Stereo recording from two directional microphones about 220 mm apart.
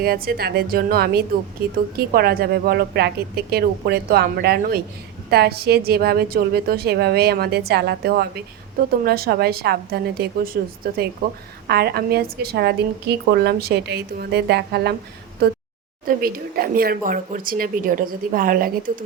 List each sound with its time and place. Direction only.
0.0 s a woman's voice: 45° right (ahead or behind)
16.0 s speech: 40° right (ahead or behind)